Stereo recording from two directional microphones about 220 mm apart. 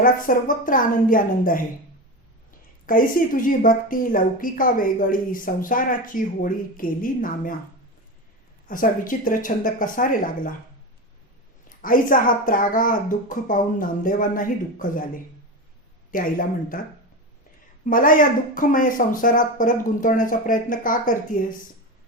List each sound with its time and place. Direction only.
0.0 s a woman's voice: 40° left (ahead or behind)
8.6 s a woman's voice: 40° left (ahead or behind)
11.8 s a woman's voice: 40° left (ahead or behind)
16.1 s a woman's voice: 40° left (ahead or behind)
17.8 s a woman's voice: 40° left (ahead or behind)